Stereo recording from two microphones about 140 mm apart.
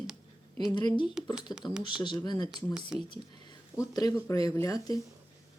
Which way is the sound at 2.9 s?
5° right (ahead or behind).